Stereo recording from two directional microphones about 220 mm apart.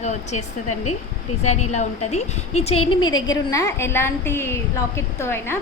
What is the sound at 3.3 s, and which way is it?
A woman's voice, 15° left (ahead or behind).